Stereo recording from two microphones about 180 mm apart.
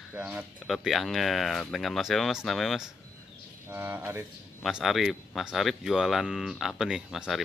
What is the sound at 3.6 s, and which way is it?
Speech, 10° right (ahead or behind).